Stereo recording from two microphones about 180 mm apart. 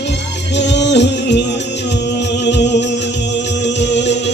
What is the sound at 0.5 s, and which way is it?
Music, 75° left (ahead or behind).